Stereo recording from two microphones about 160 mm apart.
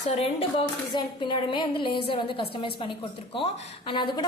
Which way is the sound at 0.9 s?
30° left (ahead or behind).